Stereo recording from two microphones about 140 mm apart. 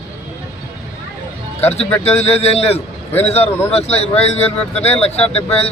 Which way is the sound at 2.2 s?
45° left (ahead or behind).